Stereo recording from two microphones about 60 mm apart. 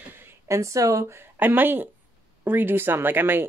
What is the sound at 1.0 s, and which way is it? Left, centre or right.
Speech, right.